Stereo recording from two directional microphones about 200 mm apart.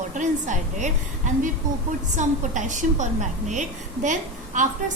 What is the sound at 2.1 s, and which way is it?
A woman's voice, 40° right (ahead or behind).